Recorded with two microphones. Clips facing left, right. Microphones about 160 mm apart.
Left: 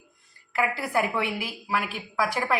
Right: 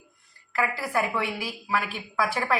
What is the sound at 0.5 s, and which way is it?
A woman's voice, 15° left (ahead or behind).